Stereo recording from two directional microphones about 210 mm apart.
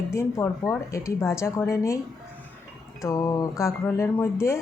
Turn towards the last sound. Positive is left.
turn(degrees=15)  # may be behind; listen again after turning